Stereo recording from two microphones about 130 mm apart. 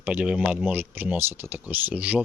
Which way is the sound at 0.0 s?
10° right (ahead or behind).